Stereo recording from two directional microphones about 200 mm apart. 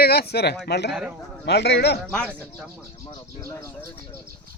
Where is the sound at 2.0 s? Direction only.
5° left (ahead or behind).